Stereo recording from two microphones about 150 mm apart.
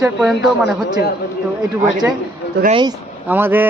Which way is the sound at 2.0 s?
15° right (ahead or behind).